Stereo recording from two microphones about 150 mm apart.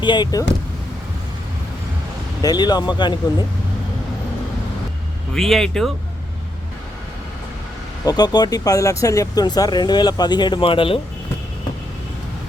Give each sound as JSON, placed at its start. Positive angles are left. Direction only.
{"t": 0.0, "sound": "speech", "side_deg": 30}
{"t": 2.4, "sound": "speech", "side_deg": 25}
{"t": 5.3, "sound": "speech", "side_deg": 0}
{"t": 8.0, "sound": "speech", "side_deg": 25}